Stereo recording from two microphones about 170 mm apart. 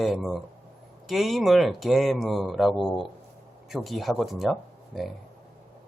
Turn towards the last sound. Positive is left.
turn(degrees=0)  # may be behind; listen again after turning